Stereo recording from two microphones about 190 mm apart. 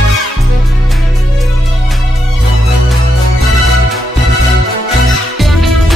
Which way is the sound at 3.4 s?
Centre (ahead or behind).